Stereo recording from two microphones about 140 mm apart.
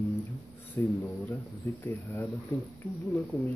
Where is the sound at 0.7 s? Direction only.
10° left (ahead or behind).